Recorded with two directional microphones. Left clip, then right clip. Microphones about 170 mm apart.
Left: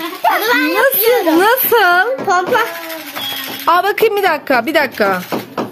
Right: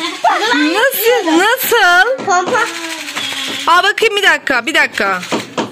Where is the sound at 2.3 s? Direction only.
35° left (ahead or behind).